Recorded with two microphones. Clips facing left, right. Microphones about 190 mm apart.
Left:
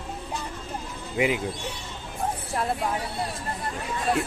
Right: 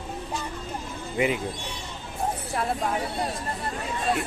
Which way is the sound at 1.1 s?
10° left (ahead or behind).